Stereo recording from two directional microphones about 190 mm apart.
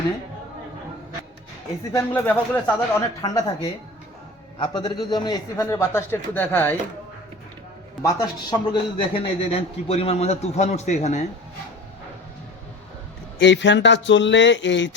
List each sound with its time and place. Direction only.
1.8 s a man's voice: 15° left (ahead or behind)
8.0 s a man's voice: 20° left (ahead or behind); by 11.3 s 35° left (ahead or behind)
13.4 s speech: 70° left (ahead or behind)